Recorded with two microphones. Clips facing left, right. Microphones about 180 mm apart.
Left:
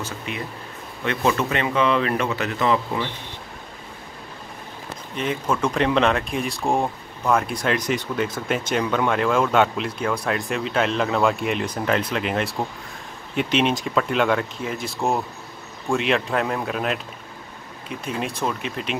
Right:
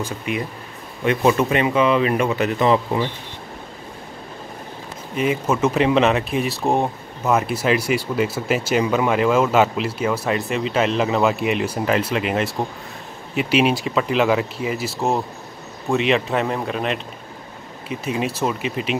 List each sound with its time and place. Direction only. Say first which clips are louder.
0.3 s a man's voice: right 5 dB; 10° right (ahead or behind)
5.1 s speech: right 4 dB; 5° right (ahead or behind)